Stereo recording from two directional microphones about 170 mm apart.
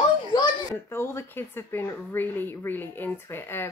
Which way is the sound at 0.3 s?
20° left (ahead or behind).